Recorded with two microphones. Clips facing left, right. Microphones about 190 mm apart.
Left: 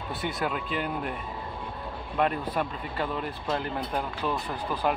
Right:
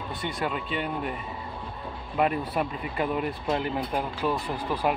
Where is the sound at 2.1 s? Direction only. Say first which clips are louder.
Right 1 dB; 5° right (ahead or behind).